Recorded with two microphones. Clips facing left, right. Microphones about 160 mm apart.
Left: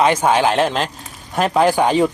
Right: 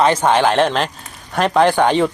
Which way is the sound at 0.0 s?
10° left (ahead or behind).